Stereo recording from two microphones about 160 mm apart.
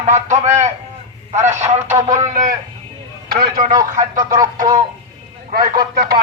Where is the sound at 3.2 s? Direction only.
70° right (ahead or behind).